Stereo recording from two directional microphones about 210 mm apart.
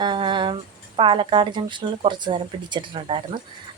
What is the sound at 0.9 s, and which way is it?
Speech, 25° right (ahead or behind).